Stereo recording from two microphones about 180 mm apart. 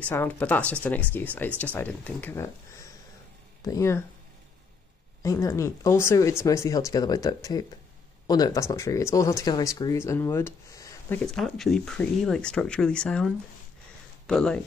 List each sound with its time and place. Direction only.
0.0 s speech: 10° left (ahead or behind)
5.2 s speech: 15° left (ahead or behind)
11.2 s speech: centre (ahead or behind)